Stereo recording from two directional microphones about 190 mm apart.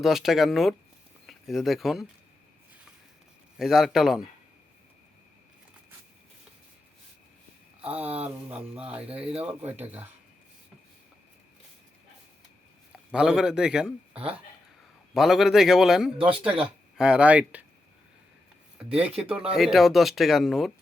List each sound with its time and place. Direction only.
0.0 s speech: centre (ahead or behind)
3.6 s speech: centre (ahead or behind)
7.9 s speech: 10° right (ahead or behind)
8.5 s speech: 30° right (ahead or behind)
8.9 s speech: 5° right (ahead or behind)
12.9 s speech: 5° right (ahead or behind)
18.8 s speech: 5° right (ahead or behind)